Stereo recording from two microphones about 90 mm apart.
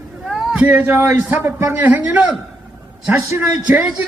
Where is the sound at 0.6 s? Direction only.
20° right (ahead or behind).